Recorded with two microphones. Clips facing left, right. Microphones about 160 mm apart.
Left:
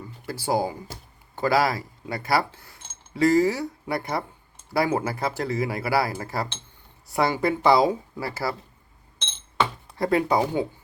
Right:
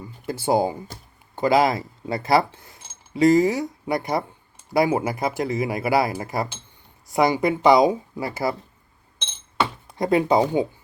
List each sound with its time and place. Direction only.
0.3 s speech: 20° right (ahead or behind)
10.0 s speech: 20° right (ahead or behind)